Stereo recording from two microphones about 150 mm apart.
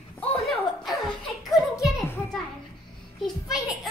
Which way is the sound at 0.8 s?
Centre (ahead or behind).